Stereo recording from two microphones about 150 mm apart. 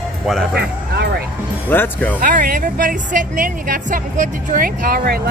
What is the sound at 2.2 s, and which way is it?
Speech, 65° right (ahead or behind).